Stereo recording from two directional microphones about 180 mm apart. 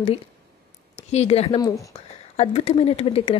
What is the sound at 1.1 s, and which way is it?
Speech, 35° left (ahead or behind).